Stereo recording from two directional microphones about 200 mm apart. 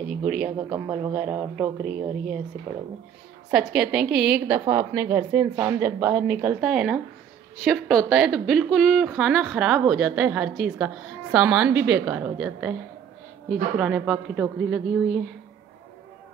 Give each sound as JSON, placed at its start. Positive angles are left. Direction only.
{"t": 0.2, "sound": "a man's voice", "side_deg": -5}